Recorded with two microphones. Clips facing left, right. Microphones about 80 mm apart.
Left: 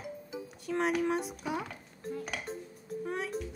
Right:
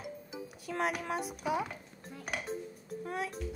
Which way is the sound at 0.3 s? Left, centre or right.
Centre.